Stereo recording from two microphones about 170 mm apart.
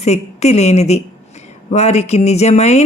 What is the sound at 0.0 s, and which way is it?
Speech, 40° left (ahead or behind).